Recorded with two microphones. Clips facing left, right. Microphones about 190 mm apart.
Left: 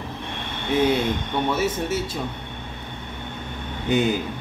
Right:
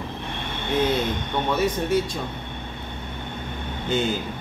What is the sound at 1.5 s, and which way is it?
Speech, 5° left (ahead or behind).